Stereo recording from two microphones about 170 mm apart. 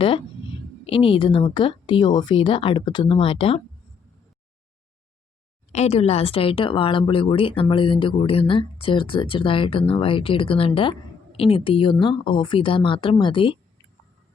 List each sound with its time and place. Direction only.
0.9 s speech: 30° left (ahead or behind)
5.7 s speech: 40° left (ahead or behind)